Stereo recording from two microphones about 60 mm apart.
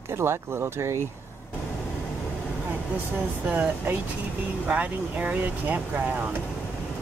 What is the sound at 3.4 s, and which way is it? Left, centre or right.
Speech, right.